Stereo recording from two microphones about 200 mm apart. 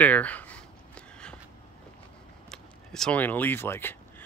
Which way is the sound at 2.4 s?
5° left (ahead or behind).